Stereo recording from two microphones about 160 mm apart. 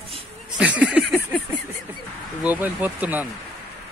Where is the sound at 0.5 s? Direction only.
10° right (ahead or behind).